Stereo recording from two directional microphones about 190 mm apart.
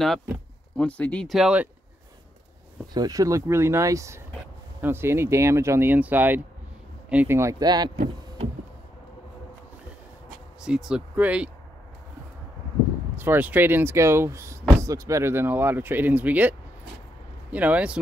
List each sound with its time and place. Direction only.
0.7 s speech: 5° left (ahead or behind)
2.9 s speech: 20° right (ahead or behind)
10.6 s speech: 5° right (ahead or behind)
13.1 s speech: 10° right (ahead or behind)